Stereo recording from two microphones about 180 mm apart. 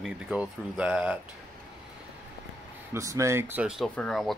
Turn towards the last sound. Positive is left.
turn(degrees=0)  # may be behind; listen again after turning